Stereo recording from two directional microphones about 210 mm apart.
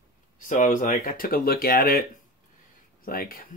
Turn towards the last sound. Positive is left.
turn(degrees=45)  # may be behind; listen again after turning